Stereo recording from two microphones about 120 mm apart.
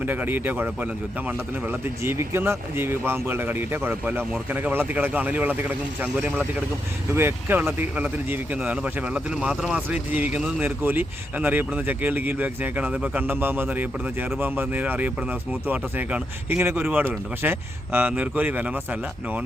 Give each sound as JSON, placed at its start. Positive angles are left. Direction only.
{"t": 0.0, "sound": "a man's voice", "side_deg": -15}